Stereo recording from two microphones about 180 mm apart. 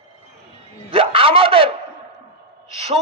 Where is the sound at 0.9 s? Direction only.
30° right (ahead or behind).